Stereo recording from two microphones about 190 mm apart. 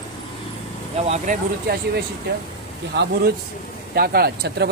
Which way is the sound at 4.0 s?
55° right (ahead or behind).